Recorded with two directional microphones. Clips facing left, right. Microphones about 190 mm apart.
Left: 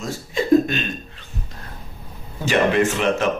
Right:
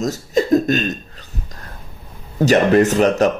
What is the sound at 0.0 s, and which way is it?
Speech, 40° right (ahead or behind).